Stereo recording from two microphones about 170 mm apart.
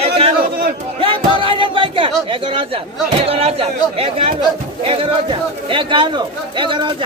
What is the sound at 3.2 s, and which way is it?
A man's voice, 35° right (ahead or behind).